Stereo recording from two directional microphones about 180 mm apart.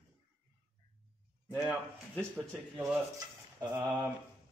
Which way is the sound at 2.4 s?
5° right (ahead or behind).